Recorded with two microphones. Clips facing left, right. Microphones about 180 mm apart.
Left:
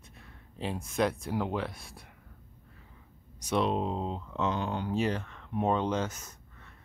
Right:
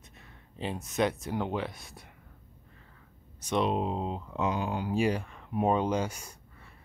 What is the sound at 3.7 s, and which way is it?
Speech, 5° right (ahead or behind).